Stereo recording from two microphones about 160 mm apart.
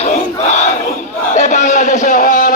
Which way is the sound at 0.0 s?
45° left (ahead or behind).